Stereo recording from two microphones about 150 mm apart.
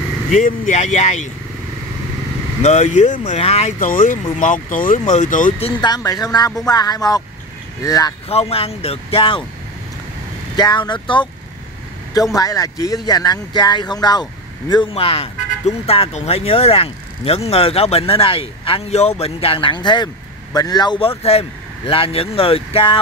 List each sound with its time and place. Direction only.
0.3 s speech: 60° left (ahead or behind)
2.6 s speech: 50° left (ahead or behind)
3.8 s speech: 65° left (ahead or behind)
5.6 s speech: 30° left (ahead or behind)
8.3 s speech: 40° left (ahead or behind)
10.5 s speech: 30° left (ahead or behind)
12.4 s speech: 25° left (ahead or behind)